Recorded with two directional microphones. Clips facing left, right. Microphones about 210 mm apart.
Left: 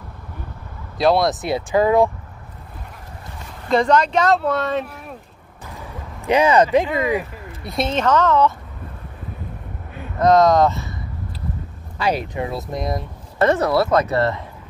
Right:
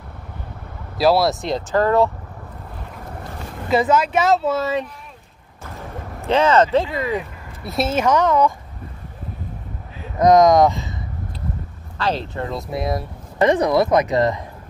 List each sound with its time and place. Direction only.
0.9 s speech: 5° right (ahead or behind)
3.6 s speech: 5° right (ahead or behind)
6.2 s speech: 15° left (ahead or behind)
7.6 s speech: 5° right (ahead or behind)
10.1 s speech: 15° right (ahead or behind)
12.0 s speech: 10° left (ahead or behind)
12.5 s speech: centre (ahead or behind)
13.4 s speech: 15° right (ahead or behind)